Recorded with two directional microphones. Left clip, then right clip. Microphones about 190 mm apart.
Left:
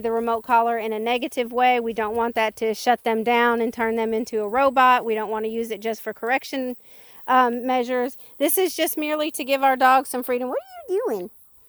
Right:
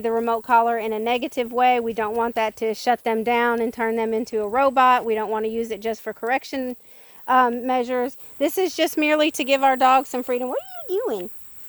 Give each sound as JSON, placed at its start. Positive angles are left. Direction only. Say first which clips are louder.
{"t": 0.0, "sound": "speech", "louder": "right 1 dB", "side_deg": 30}
{"t": 7.3, "sound": "speech", "louder": "even", "side_deg": 55}
{"t": 8.7, "sound": "speech", "louder": "right 2 dB", "side_deg": 25}
{"t": 9.0, "sound": "speech", "louder": "right 5 dB", "side_deg": 10}
{"t": 9.5, "sound": "speech", "louder": "left 1 dB", "side_deg": 35}